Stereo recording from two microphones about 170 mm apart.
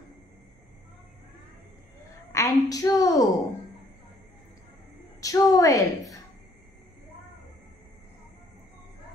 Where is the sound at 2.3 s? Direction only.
20° left (ahead or behind).